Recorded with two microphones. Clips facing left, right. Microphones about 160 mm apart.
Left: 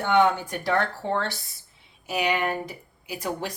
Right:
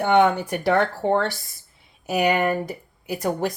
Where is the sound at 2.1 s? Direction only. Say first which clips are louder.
Right 5 dB; 45° right (ahead or behind).